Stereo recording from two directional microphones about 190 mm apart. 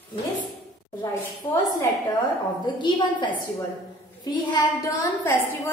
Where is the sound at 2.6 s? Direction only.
25° left (ahead or behind).